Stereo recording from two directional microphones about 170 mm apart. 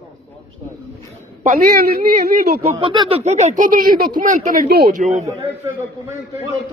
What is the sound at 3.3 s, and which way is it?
Speech, 40° right (ahead or behind).